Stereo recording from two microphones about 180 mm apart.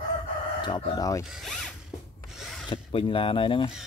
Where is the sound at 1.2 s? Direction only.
Centre (ahead or behind).